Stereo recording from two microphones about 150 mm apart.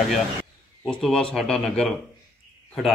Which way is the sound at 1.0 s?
5° left (ahead or behind).